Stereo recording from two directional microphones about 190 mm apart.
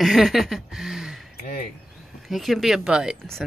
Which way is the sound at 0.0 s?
Centre (ahead or behind).